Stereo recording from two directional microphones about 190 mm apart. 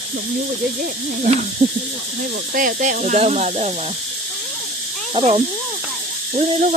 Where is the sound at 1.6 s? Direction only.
35° right (ahead or behind).